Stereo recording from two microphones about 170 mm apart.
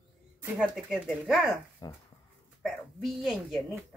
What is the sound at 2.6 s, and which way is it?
Speech, centre (ahead or behind).